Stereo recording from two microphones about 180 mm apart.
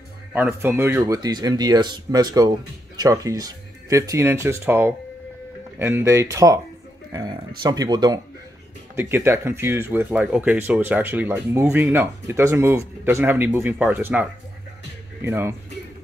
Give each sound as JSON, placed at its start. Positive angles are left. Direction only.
{"t": 0.3, "sound": "speech", "side_deg": -10}
{"t": 15.2, "sound": "speech", "side_deg": -15}